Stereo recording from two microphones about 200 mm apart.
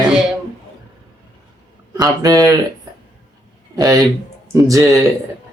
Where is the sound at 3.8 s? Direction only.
15° right (ahead or behind).